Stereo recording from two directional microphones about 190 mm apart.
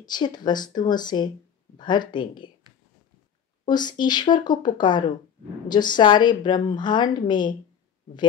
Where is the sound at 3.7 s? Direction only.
20° left (ahead or behind).